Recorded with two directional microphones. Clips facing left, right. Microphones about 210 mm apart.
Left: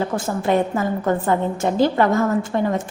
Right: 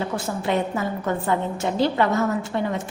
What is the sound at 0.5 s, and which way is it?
Speech, 45° left (ahead or behind).